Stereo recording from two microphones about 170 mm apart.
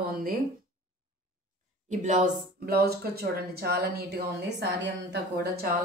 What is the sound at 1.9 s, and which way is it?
Speech, 45° right (ahead or behind).